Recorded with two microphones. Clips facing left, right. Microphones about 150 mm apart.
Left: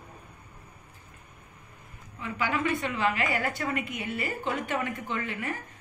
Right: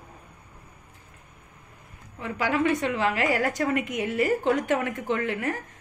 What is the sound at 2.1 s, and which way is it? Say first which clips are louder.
A woman's voice: right 4 dB; 60° right (ahead or behind).